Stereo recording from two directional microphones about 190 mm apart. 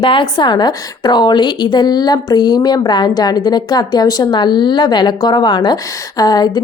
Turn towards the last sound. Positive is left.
turn(degrees=20)  # may be behind; listen again after turning